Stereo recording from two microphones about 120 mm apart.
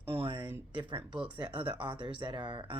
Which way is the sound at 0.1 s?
45° right (ahead or behind).